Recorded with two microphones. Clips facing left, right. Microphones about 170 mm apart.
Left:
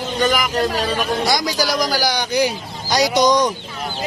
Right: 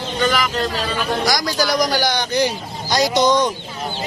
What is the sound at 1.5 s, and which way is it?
Speech, 5° left (ahead or behind).